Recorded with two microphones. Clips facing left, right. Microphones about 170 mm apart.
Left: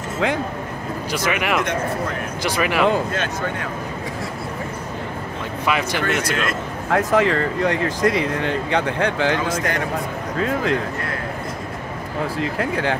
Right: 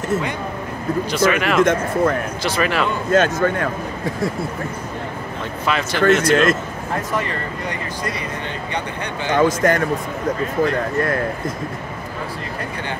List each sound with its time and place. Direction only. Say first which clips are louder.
1.1 s speech: right 3 dB; 15° left (ahead or behind)
1.6 s speech: right 7 dB; 50° right (ahead or behind)
2.4 s speech: left 2 dB; 15° left (ahead or behind)
3.1 s speech: right 8 dB; 50° right (ahead or behind)
5.7 s speech: right 5 dB; 15° left (ahead or behind)
6.9 s speech: left 7 dB; 90° left
9.4 s speech: right 7 dB; 50° right (ahead or behind)
10.4 s speech: left 1 dB; 90° left
12.4 s speech: left 6 dB; 90° left